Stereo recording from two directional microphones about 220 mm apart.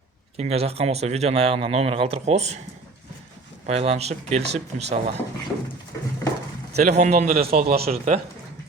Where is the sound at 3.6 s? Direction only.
30° right (ahead or behind).